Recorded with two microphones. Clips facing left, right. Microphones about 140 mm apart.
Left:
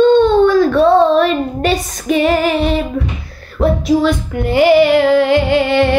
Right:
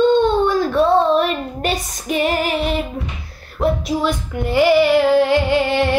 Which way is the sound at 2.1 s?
25° left (ahead or behind).